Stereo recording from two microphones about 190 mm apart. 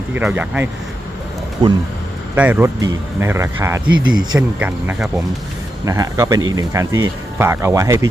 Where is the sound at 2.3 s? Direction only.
10° right (ahead or behind).